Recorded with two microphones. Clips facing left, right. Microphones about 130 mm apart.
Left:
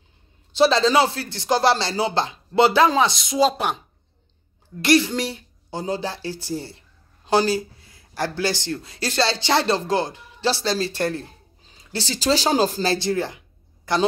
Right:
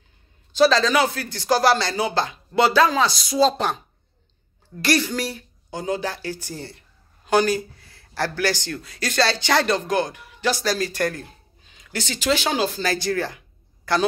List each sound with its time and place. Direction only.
0.6 s a man's voice: 25° left (ahead or behind)
3.4 s a woman's voice: 10° left (ahead or behind)
4.8 s a man's voice: 25° left (ahead or behind)